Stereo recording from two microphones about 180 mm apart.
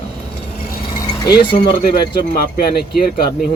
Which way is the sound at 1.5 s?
55° left (ahead or behind).